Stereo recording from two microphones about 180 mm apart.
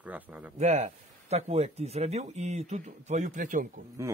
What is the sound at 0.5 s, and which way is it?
Speech, 40° right (ahead or behind).